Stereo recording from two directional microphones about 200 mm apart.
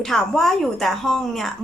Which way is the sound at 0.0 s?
Centre (ahead or behind).